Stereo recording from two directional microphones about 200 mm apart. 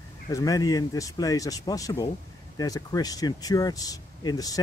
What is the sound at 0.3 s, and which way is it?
Speech, 15° left (ahead or behind).